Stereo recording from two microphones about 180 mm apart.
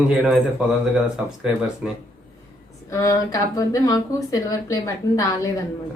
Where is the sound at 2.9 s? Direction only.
15° left (ahead or behind).